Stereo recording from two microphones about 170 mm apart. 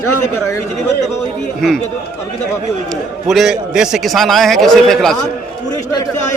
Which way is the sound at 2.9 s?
Centre (ahead or behind).